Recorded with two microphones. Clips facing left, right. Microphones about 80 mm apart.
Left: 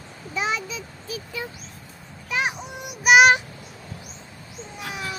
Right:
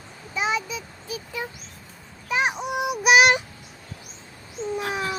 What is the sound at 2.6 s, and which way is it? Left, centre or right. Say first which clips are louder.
Child singing: right 10 dB; right.